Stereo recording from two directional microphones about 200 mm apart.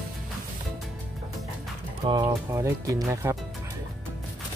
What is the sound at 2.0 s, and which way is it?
Speech, 15° right (ahead or behind).